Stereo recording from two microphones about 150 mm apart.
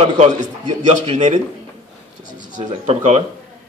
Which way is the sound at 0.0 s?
50° right (ahead or behind).